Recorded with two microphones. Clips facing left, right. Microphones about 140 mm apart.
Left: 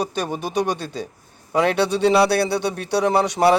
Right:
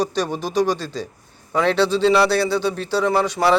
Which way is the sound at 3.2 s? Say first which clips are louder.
Left 2 dB; 25° left (ahead or behind).